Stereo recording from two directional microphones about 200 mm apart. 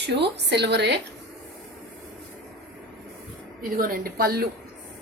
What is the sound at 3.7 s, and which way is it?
Speech, 45° right (ahead or behind).